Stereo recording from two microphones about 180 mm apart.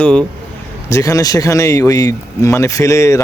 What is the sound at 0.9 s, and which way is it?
Speech, 15° left (ahead or behind).